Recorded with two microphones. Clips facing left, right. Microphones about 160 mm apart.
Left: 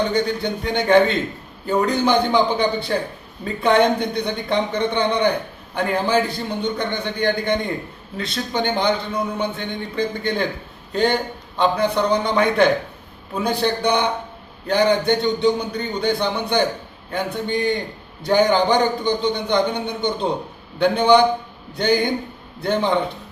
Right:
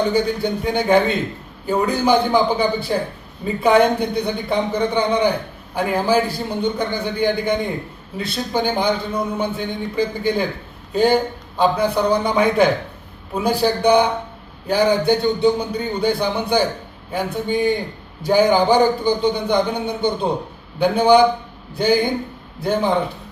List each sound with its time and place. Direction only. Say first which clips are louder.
0.1 s a man's voice: right 2 dB; 10° right (ahead or behind)